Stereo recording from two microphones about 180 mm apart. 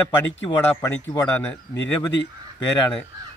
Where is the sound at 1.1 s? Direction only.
20° left (ahead or behind).